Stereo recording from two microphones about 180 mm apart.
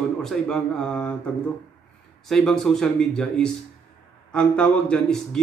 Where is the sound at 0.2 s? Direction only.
5° left (ahead or behind).